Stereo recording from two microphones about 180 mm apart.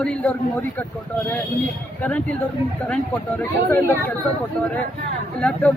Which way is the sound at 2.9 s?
10° left (ahead or behind).